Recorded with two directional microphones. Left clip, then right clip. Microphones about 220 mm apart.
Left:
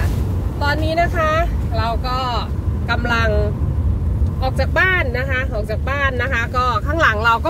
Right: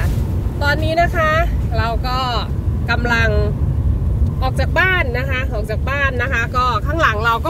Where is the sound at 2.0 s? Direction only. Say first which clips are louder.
Right 1 dB; 60° left (ahead or behind).